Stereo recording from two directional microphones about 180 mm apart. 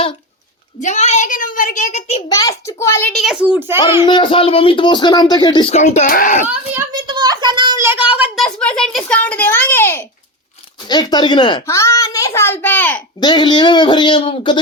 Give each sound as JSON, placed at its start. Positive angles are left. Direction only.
{"t": 0.8, "sound": "a child's voice", "side_deg": 40}
{"t": 2.3, "sound": "a child's voice", "side_deg": 20}
{"t": 3.1, "sound": "a woman's voice", "side_deg": 0}
{"t": 4.0, "sound": "speech", "side_deg": 25}
{"t": 5.7, "sound": "a child's voice", "side_deg": 40}
{"t": 6.9, "sound": "a sound", "side_deg": -25}
{"t": 7.9, "sound": "a sound", "side_deg": -10}
{"t": 8.4, "sound": "a child's voice", "side_deg": 5}
{"t": 10.8, "sound": "a child's voice", "side_deg": 25}
{"t": 13.1, "sound": "speech", "side_deg": 25}